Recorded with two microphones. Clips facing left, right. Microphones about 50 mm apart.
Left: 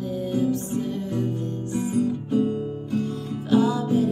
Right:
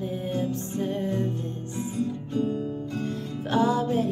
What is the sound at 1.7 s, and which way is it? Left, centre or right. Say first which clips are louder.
Guitar: left 6 dB; left.